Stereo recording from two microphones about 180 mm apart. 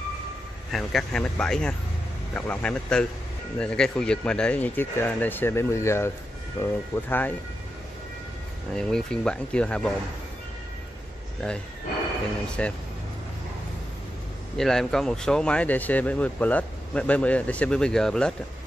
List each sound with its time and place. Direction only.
0.7 s speech: centre (ahead or behind)
8.7 s speech: 5° left (ahead or behind)
11.4 s speech: 5° left (ahead or behind)
12.6 s speech: 5° left (ahead or behind)
14.6 s speech: centre (ahead or behind)